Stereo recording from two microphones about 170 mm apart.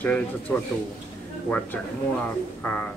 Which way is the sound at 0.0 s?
10° left (ahead or behind).